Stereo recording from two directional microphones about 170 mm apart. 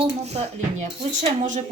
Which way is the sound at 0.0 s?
40° right (ahead or behind).